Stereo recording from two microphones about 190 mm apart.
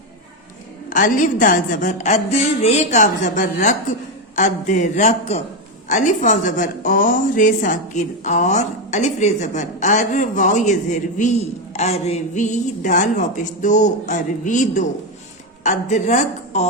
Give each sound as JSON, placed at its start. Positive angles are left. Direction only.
{"t": 0.9, "sound": "a woman's voice", "side_deg": 45}